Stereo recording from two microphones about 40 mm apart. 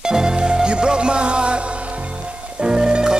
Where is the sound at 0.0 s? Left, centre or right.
Centre.